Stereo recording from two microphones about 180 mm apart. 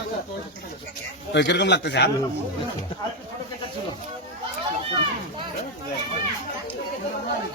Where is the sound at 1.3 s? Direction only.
75° left (ahead or behind).